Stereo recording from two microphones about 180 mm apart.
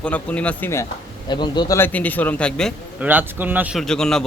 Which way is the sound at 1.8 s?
10° left (ahead or behind).